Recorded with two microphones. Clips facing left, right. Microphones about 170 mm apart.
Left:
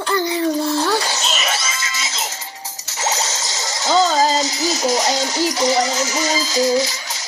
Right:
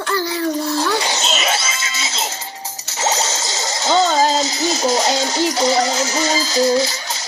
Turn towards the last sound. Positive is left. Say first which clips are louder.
# right 1 dB
turn(degrees=-30)  # may be behind; listen again after turning